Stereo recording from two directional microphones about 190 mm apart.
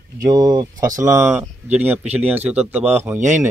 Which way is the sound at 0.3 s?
20° right (ahead or behind).